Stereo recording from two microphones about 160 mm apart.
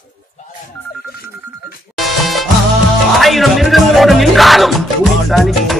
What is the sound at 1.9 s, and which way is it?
Music, centre (ahead or behind).